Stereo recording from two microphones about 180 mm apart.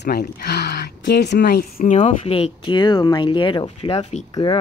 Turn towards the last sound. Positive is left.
turn(degrees=25)  # may be behind; listen again after turning